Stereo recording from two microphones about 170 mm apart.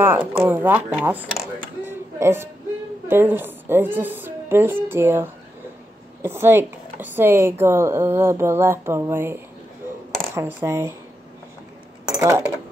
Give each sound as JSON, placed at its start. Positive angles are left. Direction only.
{"t": 0.4, "sound": "speech", "side_deg": -10}
{"t": 1.9, "sound": "music", "side_deg": -15}
{"t": 3.1, "sound": "speech", "side_deg": -10}
{"t": 12.1, "sound": "speech", "side_deg": -15}